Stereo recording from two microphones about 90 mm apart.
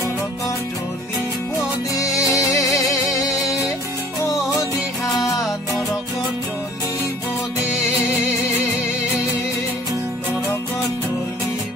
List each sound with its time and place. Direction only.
2.0 s music: 40° left (ahead or behind)